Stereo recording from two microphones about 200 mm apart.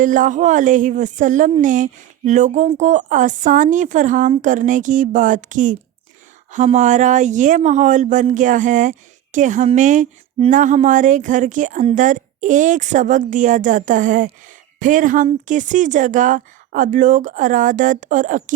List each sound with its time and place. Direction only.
0.0 s speech: 40° right (ahead or behind)